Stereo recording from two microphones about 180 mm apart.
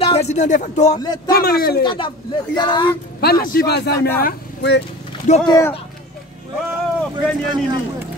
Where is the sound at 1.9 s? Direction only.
25° left (ahead or behind).